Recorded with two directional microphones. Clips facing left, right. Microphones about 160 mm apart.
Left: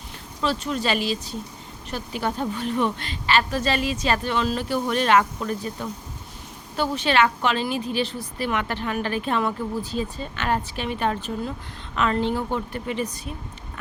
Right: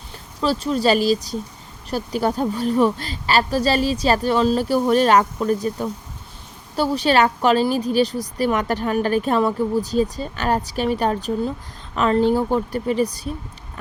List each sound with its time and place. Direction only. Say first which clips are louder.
0.4 s a woman's voice: right 6 dB; 35° right (ahead or behind)